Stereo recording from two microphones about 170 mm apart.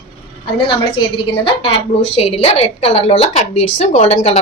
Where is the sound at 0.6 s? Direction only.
30° left (ahead or behind).